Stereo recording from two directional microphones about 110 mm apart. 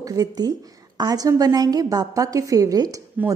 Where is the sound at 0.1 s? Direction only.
35° right (ahead or behind).